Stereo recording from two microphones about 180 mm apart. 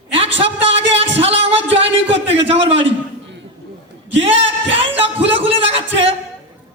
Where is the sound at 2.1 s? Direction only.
35° right (ahead or behind).